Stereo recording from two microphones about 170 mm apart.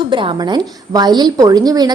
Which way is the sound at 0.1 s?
30° right (ahead or behind).